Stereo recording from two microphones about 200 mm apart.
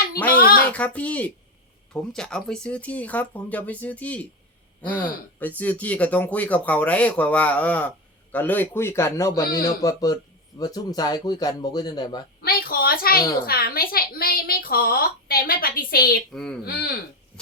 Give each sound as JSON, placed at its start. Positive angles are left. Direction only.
{"t": 0.3, "sound": "a sound", "side_deg": 45}
{"t": 0.7, "sound": "speech", "side_deg": 5}
{"t": 5.4, "sound": "speech", "side_deg": 10}
{"t": 12.4, "sound": "a sound", "side_deg": 50}
{"t": 13.4, "sound": "a woman's voice", "side_deg": 50}
{"t": 16.3, "sound": "speech", "side_deg": 5}
{"t": 16.6, "sound": "a woman's voice", "side_deg": 50}